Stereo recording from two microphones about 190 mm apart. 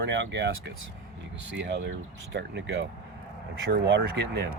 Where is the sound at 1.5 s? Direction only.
70° right (ahead or behind).